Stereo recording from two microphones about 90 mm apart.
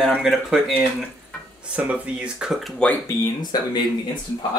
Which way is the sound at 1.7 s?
15° right (ahead or behind).